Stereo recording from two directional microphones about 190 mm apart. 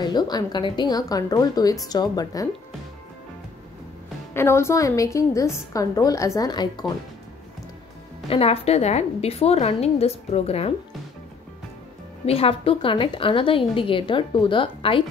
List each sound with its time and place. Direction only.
0.0 s a woman's voice: 20° left (ahead or behind)
4.3 s a woman's voice: 15° left (ahead or behind)
8.3 s a woman's voice: 30° left (ahead or behind)
12.3 s a woman's voice: 30° left (ahead or behind)